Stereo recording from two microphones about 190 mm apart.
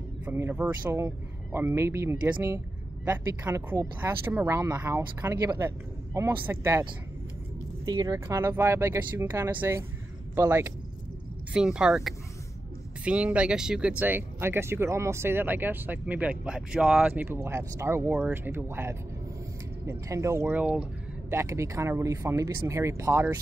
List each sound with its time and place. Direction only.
0.2 s speech: 10° right (ahead or behind)
11.5 s speech: 5° right (ahead or behind)